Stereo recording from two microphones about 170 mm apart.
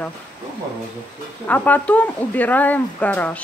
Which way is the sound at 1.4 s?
10° left (ahead or behind).